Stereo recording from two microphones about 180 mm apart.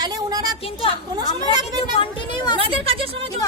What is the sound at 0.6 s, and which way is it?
Speech, 30° left (ahead or behind).